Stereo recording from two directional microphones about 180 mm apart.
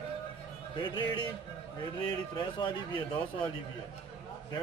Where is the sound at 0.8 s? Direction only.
25° left (ahead or behind).